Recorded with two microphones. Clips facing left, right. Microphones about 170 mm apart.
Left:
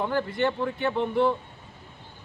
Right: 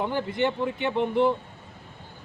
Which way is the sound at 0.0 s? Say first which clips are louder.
Even; 15° right (ahead or behind).